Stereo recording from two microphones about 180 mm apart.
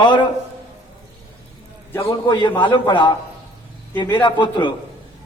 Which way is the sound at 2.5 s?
25° left (ahead or behind).